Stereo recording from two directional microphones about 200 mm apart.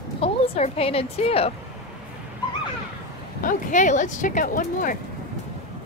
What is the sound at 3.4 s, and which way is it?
Speech, 40° left (ahead or behind).